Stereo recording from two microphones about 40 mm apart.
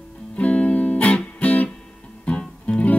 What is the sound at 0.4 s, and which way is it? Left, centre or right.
Music, left.